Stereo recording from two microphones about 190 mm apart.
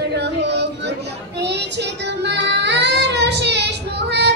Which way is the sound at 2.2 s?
65° right (ahead or behind).